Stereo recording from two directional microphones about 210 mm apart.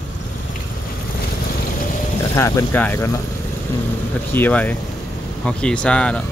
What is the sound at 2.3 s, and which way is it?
Speech, 15° left (ahead or behind).